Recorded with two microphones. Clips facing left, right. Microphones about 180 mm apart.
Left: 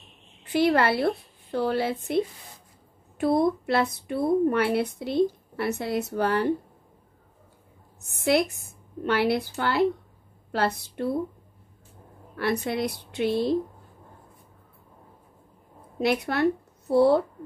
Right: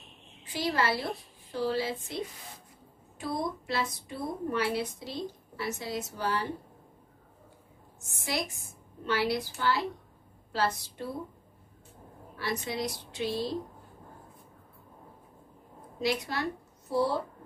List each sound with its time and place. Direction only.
0.4 s a woman's voice: 60° left (ahead or behind)
3.2 s a woman's voice: 60° left (ahead or behind)
8.0 s a woman's voice: 60° left (ahead or behind)
12.4 s a woman's voice: 60° left (ahead or behind)
16.0 s speech: 60° left (ahead or behind)